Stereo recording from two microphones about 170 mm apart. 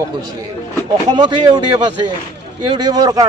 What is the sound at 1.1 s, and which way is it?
Speech, 25° right (ahead or behind).